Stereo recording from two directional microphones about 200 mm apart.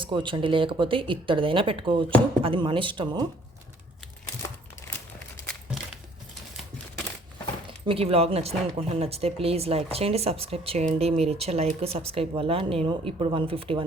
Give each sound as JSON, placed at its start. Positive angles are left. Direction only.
{"t": 0.0, "sound": "speech", "side_deg": -25}
{"t": 7.9, "sound": "speech", "side_deg": -30}